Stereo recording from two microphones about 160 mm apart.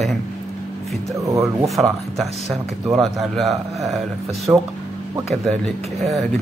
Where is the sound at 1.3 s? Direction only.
20° right (ahead or behind).